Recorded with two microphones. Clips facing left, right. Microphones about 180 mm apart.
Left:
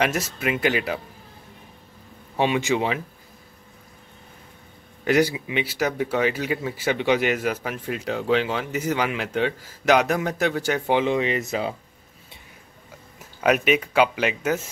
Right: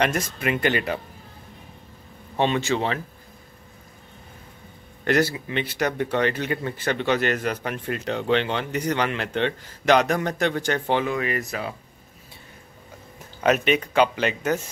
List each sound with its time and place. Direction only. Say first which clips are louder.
0.0 s speech: even; 5° left (ahead or behind)
2.3 s speech: left 1 dB; 10° left (ahead or behind)
5.0 s speech: left 2 dB; 10° left (ahead or behind)
11.1 s speech: left 3 dB; 25° left (ahead or behind)
13.4 s speech: even; 5° left (ahead or behind)